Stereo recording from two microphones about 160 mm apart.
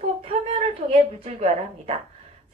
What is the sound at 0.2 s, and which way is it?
A woman's voice, 40° right (ahead or behind).